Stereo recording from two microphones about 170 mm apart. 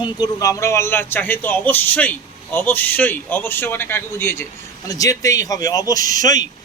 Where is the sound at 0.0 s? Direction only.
20° left (ahead or behind).